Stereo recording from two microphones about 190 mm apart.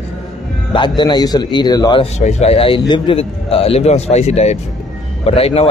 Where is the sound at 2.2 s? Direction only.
35° left (ahead or behind).